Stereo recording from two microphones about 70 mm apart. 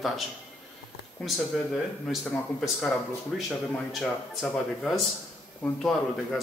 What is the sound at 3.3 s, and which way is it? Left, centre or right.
Speech, centre.